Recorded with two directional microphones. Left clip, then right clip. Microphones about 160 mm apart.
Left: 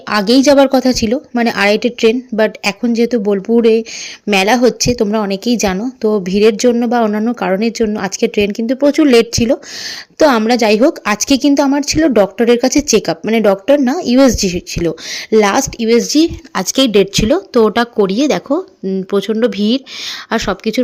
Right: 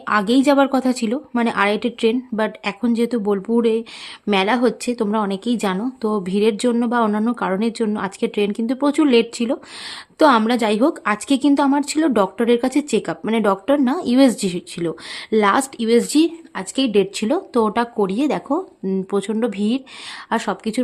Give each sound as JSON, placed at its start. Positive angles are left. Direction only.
{"t": 0.4, "sound": "speech", "side_deg": 15}
{"t": 16.6, "sound": "speech", "side_deg": 40}